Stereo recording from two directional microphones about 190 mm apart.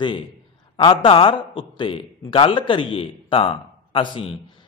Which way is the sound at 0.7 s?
25° left (ahead or behind).